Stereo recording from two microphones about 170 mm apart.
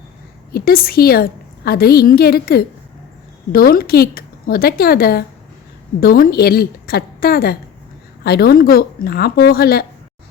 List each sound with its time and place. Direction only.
0.5 s a woman's voice: 60° left (ahead or behind)